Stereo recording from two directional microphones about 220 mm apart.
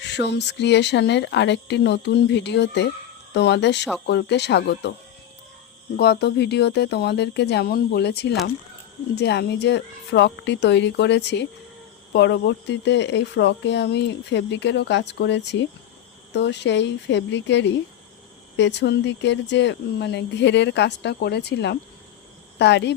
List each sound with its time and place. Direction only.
0.1 s speech: 50° left (ahead or behind)
6.0 s speech: 50° left (ahead or behind)